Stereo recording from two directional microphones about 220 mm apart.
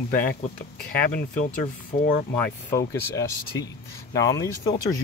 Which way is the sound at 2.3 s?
10° left (ahead or behind).